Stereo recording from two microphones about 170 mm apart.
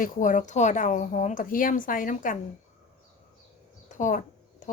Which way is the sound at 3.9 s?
50° left (ahead or behind).